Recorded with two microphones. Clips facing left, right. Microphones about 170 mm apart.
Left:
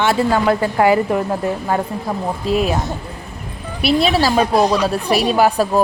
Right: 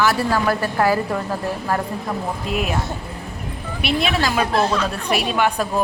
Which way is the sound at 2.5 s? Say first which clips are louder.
Left 7 dB; 35° left (ahead or behind).